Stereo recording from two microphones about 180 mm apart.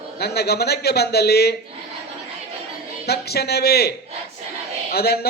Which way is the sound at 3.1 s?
65° left (ahead or behind).